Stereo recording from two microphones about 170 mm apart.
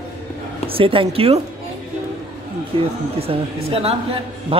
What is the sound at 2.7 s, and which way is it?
Speech, 30° right (ahead or behind).